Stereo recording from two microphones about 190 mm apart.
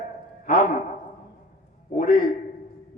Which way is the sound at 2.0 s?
45° left (ahead or behind).